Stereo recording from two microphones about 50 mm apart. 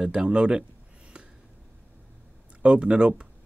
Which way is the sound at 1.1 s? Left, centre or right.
Centre.